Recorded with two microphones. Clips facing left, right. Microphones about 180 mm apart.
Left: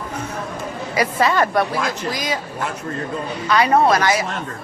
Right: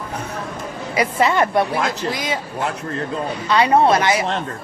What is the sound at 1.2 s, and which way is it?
Speech, 25° right (ahead or behind).